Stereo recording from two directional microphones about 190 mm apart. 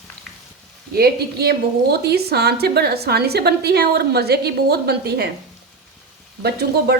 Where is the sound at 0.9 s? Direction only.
55° right (ahead or behind).